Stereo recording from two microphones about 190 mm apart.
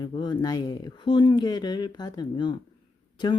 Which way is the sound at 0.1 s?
25° left (ahead or behind).